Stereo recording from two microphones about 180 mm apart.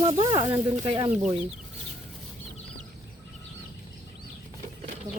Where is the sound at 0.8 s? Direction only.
30° right (ahead or behind).